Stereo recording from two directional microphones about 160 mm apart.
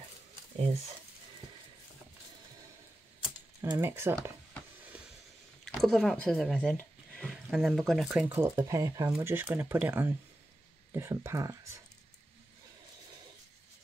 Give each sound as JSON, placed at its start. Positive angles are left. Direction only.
{"t": 0.6, "sound": "speech", "side_deg": -40}
{"t": 3.6, "sound": "speech", "side_deg": -15}
{"t": 5.8, "sound": "speech", "side_deg": 0}
{"t": 8.3, "sound": "speech", "side_deg": -15}